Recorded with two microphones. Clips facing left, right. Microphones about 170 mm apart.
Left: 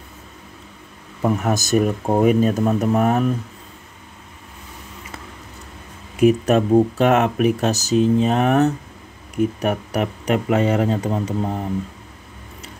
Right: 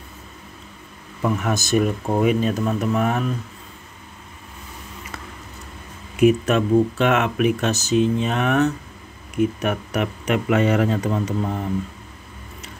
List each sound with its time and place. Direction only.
1.2 s speech: 40° left (ahead or behind)
6.1 s speech: 35° left (ahead or behind)